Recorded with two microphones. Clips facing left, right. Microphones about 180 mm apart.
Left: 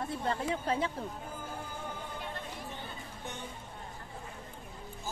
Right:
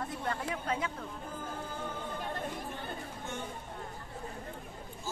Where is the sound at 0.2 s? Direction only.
25° left (ahead or behind).